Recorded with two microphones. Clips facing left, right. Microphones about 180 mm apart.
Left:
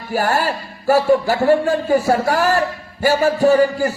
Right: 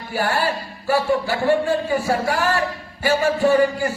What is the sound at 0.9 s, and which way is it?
A man's voice, 40° left (ahead or behind).